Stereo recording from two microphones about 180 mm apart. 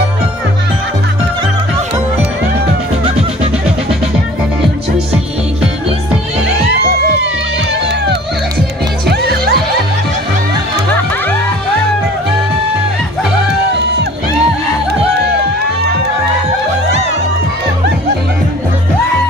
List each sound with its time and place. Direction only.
9.0 s music: 65° right (ahead or behind)